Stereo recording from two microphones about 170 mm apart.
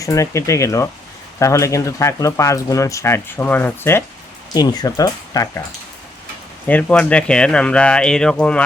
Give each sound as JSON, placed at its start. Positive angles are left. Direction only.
{"t": 0.0, "sound": "speech", "side_deg": 20}
{"t": 6.7, "sound": "speech", "side_deg": 10}